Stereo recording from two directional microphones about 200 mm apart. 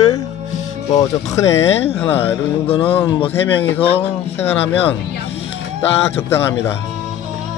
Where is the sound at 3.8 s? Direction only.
30° left (ahead or behind).